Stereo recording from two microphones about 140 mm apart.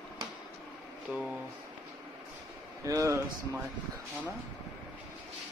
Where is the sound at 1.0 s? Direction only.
Centre (ahead or behind).